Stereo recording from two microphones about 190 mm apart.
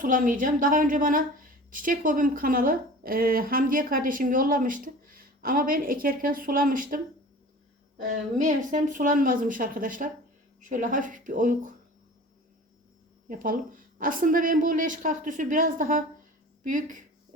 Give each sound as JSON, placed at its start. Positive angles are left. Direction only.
{"t": 0.0, "sound": "a woman's voice", "side_deg": -45}
{"t": 8.0, "sound": "a woman's voice", "side_deg": -40}
{"t": 13.2, "sound": "a woman's voice", "side_deg": -45}